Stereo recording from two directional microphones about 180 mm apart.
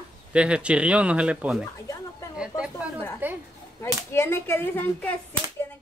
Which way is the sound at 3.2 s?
10° right (ahead or behind).